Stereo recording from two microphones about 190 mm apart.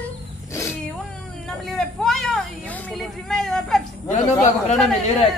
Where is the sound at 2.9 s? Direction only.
Centre (ahead or behind).